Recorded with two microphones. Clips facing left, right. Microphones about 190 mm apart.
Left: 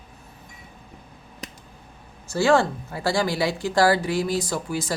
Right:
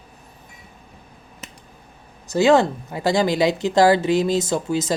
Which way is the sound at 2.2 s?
20° right (ahead or behind).